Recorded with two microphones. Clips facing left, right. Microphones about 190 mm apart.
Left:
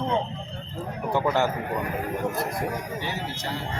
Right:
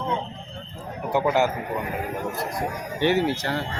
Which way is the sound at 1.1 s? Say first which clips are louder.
Right 2 dB; 10° right (ahead or behind).